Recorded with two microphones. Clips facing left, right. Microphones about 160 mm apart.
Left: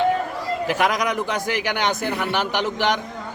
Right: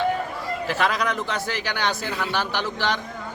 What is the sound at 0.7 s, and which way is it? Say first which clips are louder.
A man's voice: left 2 dB; 15° left (ahead or behind).